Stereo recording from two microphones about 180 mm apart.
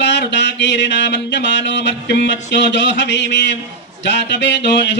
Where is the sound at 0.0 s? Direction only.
75° left (ahead or behind).